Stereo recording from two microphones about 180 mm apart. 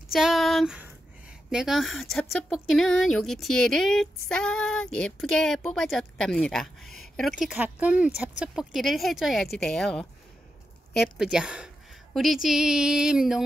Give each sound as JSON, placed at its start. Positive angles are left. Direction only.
{"t": 0.1, "sound": "a woman's voice", "side_deg": 0}
{"t": 11.1, "sound": "a woman's voice", "side_deg": -5}